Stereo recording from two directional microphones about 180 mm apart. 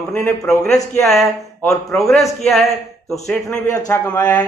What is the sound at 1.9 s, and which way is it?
Speech, centre (ahead or behind).